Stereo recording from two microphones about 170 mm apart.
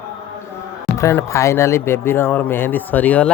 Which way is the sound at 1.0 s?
15° left (ahead or behind).